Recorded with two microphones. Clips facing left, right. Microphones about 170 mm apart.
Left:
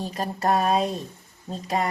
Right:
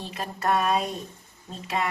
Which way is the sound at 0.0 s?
40° left (ahead or behind).